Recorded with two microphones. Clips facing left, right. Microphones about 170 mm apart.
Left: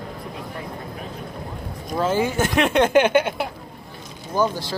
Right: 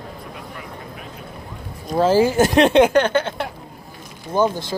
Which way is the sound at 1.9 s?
35° right (ahead or behind).